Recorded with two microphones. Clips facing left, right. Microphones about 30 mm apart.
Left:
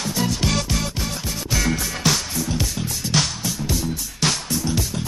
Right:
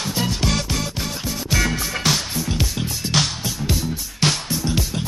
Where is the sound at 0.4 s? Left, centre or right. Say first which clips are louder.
Even; centre.